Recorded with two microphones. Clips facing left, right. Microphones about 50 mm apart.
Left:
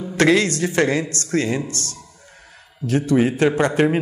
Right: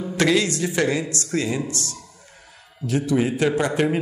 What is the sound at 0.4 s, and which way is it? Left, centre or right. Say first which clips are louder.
A man's voice: left 3 dB; left.